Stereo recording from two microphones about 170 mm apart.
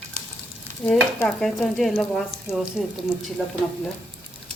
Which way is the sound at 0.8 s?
5° left (ahead or behind).